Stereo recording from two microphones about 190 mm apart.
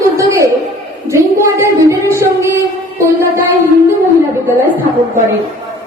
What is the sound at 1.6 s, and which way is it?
Speech, 15° right (ahead or behind).